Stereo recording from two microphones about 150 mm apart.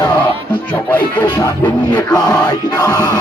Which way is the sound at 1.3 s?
25° left (ahead or behind).